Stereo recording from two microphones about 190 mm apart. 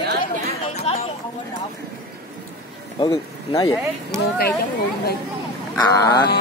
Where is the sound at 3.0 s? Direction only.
20° left (ahead or behind).